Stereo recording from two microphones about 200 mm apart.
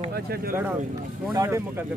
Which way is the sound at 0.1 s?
50° right (ahead or behind).